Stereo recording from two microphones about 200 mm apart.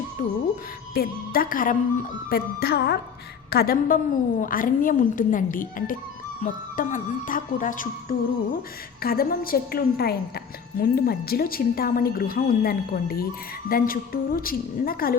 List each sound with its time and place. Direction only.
0.2 s speech: 35° left (ahead or behind)
0.9 s a woman's voice: 45° left (ahead or behind)